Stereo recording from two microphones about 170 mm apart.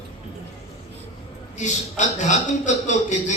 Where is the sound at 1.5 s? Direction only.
45° left (ahead or behind).